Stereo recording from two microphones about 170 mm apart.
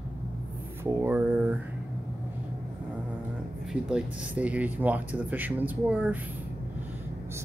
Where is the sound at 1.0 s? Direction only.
10° right (ahead or behind).